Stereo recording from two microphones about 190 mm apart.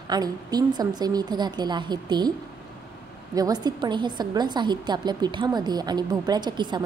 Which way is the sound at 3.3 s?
20° right (ahead or behind).